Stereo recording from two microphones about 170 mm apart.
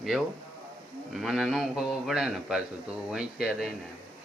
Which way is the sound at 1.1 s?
Centre (ahead or behind).